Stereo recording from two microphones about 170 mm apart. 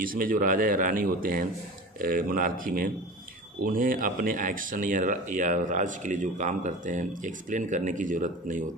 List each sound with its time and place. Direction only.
0.0 s speech: 55° right (ahead or behind)